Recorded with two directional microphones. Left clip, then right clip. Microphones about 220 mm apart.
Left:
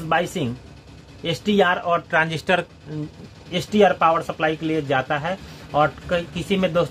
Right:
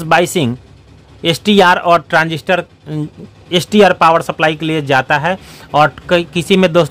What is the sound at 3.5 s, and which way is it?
Speech, 50° right (ahead or behind).